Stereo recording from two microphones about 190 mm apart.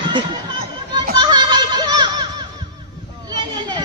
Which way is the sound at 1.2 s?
20° right (ahead or behind).